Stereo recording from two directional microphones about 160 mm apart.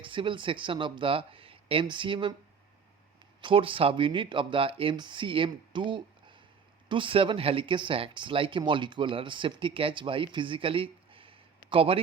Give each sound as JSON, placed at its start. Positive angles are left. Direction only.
{"t": 0.0, "sound": "speech", "side_deg": -30}
{"t": 3.4, "sound": "speech", "side_deg": -35}